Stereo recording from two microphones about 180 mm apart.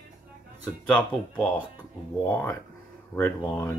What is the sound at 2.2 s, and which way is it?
Speech, 10° left (ahead or behind).